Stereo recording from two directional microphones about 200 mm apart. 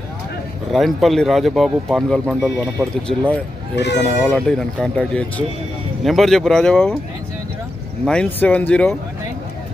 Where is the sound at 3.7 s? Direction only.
60° left (ahead or behind).